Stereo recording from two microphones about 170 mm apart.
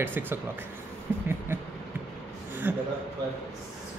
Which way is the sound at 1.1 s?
15° right (ahead or behind).